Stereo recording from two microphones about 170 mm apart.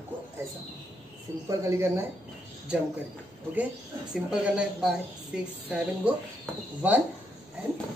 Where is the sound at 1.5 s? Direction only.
15° right (ahead or behind).